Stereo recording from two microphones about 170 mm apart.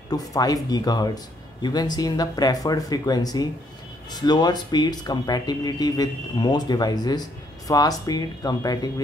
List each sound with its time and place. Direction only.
0.1 s speech: 20° left (ahead or behind)